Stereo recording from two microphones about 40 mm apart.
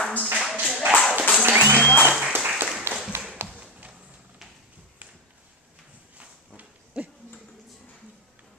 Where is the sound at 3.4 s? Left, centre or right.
Right.